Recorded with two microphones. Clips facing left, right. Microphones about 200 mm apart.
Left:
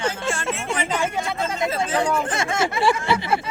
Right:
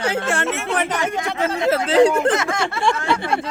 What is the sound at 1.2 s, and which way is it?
Speech, 80° right.